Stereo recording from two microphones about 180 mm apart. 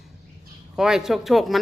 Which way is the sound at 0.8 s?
5° right (ahead or behind).